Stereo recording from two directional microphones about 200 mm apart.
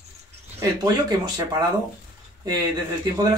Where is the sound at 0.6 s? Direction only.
15° right (ahead or behind).